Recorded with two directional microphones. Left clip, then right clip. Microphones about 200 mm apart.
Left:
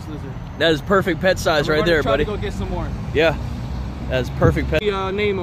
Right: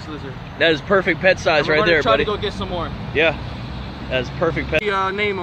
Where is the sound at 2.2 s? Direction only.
Centre (ahead or behind).